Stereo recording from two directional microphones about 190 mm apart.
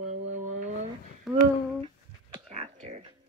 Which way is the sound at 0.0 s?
35° right (ahead or behind).